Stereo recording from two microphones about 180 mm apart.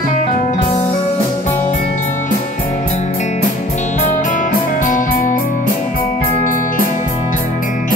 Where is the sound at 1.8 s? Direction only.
45° left (ahead or behind).